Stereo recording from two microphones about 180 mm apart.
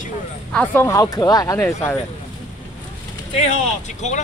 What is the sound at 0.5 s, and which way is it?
Speech, 15° left (ahead or behind).